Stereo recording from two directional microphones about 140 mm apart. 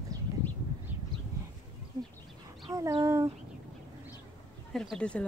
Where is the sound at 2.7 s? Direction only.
25° right (ahead or behind).